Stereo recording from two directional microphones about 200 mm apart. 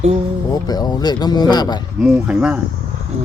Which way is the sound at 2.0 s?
5° right (ahead or behind).